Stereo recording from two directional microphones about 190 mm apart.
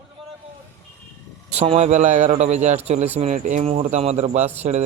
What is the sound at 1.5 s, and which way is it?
Speech, 35° right (ahead or behind).